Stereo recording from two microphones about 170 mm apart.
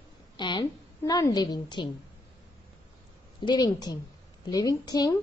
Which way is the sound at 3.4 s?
25° left (ahead or behind).